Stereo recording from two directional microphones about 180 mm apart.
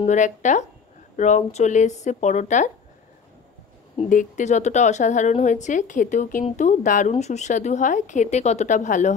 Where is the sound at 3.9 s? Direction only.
45° left (ahead or behind).